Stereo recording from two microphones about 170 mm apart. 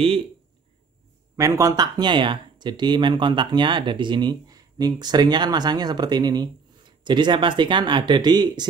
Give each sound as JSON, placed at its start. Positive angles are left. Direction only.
{"t": 1.3, "sound": "speech", "side_deg": -20}